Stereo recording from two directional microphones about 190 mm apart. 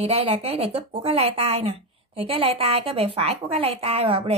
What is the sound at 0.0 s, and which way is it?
A woman's voice, 30° right (ahead or behind).